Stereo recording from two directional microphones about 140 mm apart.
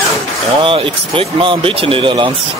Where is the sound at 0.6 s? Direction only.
40° right (ahead or behind).